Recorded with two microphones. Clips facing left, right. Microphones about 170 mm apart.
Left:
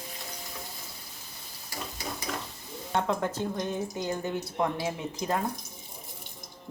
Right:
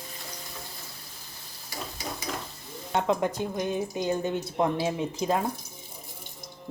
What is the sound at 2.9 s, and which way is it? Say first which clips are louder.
A woman's voice: right 3 dB; 15° right (ahead or behind).